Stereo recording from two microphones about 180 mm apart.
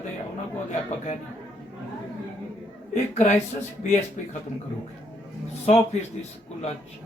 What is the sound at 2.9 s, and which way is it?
Speech, 40° left (ahead or behind).